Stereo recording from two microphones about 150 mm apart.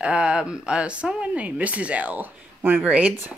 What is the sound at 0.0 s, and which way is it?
Speech, 5° right (ahead or behind).